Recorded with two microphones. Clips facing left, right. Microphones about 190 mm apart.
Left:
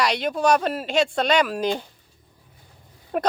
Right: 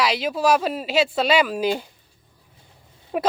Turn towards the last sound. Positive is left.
turn(degrees=0)  # may be behind; listen again after turning